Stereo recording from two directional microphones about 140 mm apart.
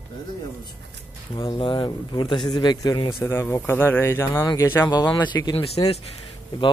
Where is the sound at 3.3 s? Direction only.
15° left (ahead or behind).